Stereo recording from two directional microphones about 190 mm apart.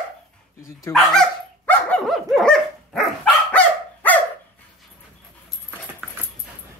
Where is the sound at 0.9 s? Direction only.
5° left (ahead or behind).